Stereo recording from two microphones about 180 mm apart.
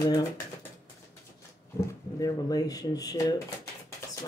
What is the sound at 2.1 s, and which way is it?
Speech, 20° left (ahead or behind).